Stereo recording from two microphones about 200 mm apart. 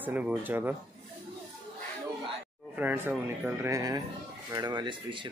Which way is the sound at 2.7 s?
10° right (ahead or behind).